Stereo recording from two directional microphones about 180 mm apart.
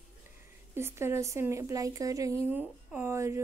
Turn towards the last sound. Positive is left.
turn(degrees=-15)  # may be behind; listen again after turning